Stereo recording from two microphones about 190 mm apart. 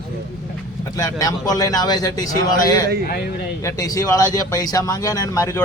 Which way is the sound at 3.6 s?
20° left (ahead or behind).